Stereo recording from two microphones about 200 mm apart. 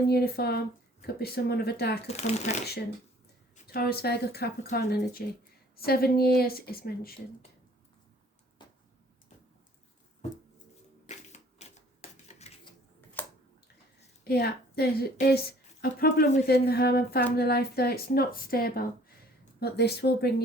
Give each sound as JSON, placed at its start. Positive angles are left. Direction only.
{"t": 0.1, "sound": "a woman's voice", "side_deg": 50}
{"t": 2.0, "sound": "speech", "side_deg": 35}
{"t": 3.7, "sound": "a woman's voice", "side_deg": 50}
{"t": 11.0, "sound": "typewriter", "side_deg": 35}
{"t": 13.2, "sound": "bathtub", "side_deg": 10}
{"t": 14.3, "sound": "a woman's voice", "side_deg": 50}